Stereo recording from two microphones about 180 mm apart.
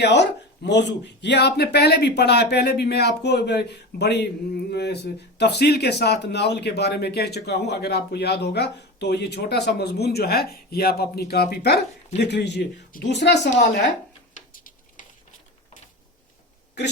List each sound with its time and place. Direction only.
0.0 s speech: 70° left (ahead or behind)
14.5 s dishes: 50° left (ahead or behind)